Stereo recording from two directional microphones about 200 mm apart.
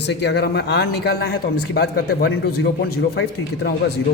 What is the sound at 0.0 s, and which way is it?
A man's voice, 55° left (ahead or behind).